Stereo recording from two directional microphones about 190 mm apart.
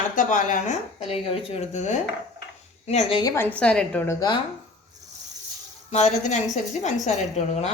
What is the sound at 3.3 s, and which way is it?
Speech, 10° left (ahead or behind).